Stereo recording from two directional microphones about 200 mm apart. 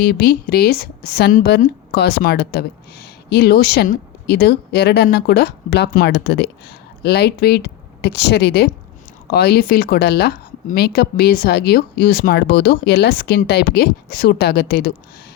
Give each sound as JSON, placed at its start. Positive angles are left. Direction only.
{"t": 0.0, "sound": "a woman's voice", "side_deg": 50}